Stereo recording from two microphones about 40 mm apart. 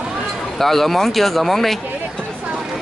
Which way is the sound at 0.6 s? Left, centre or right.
Centre.